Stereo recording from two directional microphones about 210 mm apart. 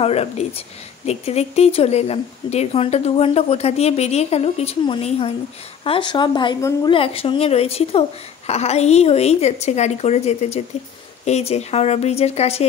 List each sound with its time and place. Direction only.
0.0 s a woman's voice: 30° left (ahead or behind)